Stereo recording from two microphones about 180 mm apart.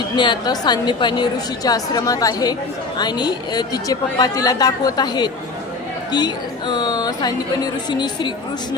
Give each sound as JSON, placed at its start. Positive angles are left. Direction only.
{"t": 0.2, "sound": "a woman's voice", "side_deg": 25}